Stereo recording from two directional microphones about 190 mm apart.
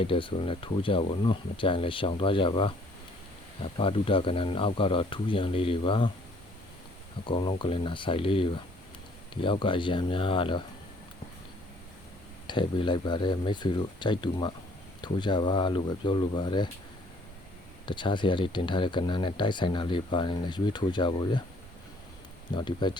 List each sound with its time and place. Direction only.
0.0 s speech: 25° left (ahead or behind)
7.3 s speech: 25° left (ahead or behind)
12.5 s speech: 25° left (ahead or behind)
17.8 s speech: 25° left (ahead or behind)
22.5 s speech: 25° left (ahead or behind)